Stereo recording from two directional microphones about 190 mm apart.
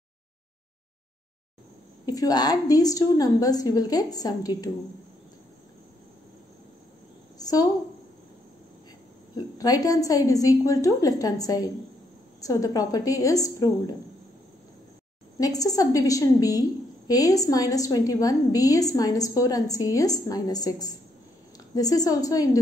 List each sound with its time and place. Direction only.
2.0 s a woman's voice: 20° left (ahead or behind)
7.3 s a sound: 20° left (ahead or behind)
9.6 s a woman's voice: 20° left (ahead or behind)
15.3 s a woman's voice: 20° left (ahead or behind)